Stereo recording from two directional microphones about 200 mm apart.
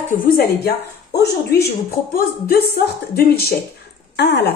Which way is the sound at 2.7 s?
55° left (ahead or behind).